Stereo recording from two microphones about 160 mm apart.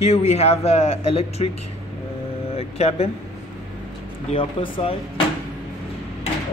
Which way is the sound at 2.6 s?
40° left (ahead or behind).